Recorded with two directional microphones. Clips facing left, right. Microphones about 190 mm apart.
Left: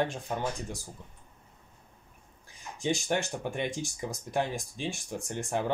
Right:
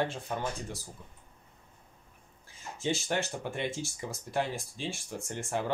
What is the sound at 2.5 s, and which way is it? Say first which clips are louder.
Speech: left 2 dB; 15° left (ahead or behind).